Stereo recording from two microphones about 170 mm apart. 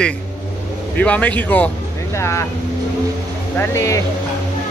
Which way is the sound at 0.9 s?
10° left (ahead or behind).